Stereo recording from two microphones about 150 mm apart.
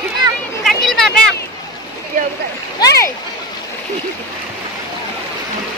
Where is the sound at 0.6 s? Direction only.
Centre (ahead or behind).